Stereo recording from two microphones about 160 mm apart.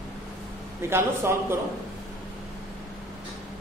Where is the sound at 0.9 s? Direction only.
15° right (ahead or behind).